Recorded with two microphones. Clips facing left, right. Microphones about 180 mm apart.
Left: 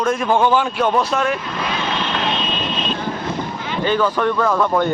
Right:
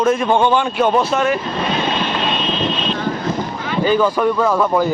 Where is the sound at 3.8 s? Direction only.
10° right (ahead or behind).